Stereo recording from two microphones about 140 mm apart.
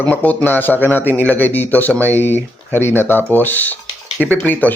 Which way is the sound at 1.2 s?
15° left (ahead or behind).